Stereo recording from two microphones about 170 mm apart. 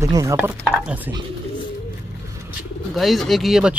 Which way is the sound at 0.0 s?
20° right (ahead or behind).